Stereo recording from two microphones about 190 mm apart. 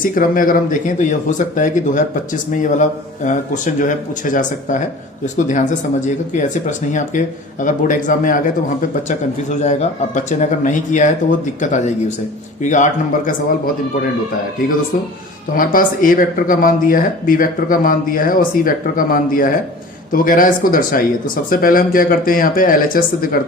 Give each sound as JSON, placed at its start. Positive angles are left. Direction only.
{"t": 0.0, "sound": "speech", "side_deg": 45}
{"t": 15.5, "sound": "speech", "side_deg": 45}